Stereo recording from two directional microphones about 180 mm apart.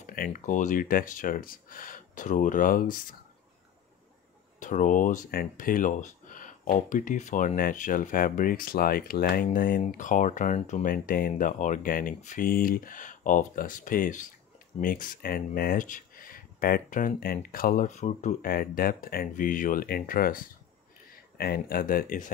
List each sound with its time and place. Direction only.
0.0 s speech: 50° left (ahead or behind)
4.6 s speech: 45° left (ahead or behind)